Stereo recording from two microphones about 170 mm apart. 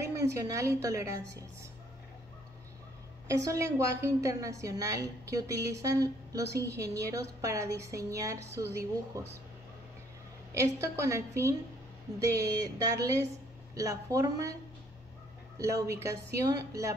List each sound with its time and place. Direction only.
0.0 s a woman's voice: 15° right (ahead or behind)
3.3 s a woman's voice: 15° right (ahead or behind)
10.5 s a woman's voice: 15° right (ahead or behind)